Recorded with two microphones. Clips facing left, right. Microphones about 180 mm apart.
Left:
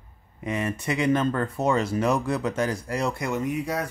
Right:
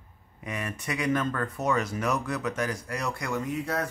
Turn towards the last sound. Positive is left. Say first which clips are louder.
# left 3 dB
turn(degrees=15)  # may be behind; listen again after turning